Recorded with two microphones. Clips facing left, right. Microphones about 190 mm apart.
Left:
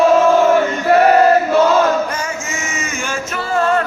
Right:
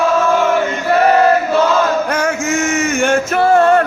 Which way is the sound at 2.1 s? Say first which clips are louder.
Right 7 dB; 70° right (ahead or behind).